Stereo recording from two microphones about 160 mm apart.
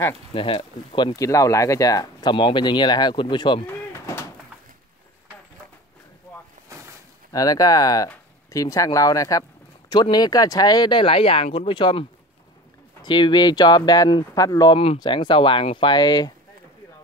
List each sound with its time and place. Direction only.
0.3 s speech: 35° left (ahead or behind)
4.0 s bird: 15° left (ahead or behind)
7.3 s speech: 20° left (ahead or behind)